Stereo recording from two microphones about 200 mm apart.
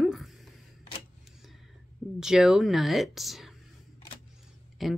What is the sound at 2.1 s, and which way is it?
Speech, 5° right (ahead or behind).